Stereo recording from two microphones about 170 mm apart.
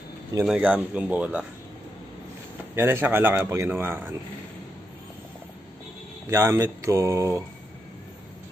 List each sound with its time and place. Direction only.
0.5 s a man's voice: 10° right (ahead or behind)
2.7 s a man's voice: 15° right (ahead or behind)
6.2 s a man's voice: 15° right (ahead or behind)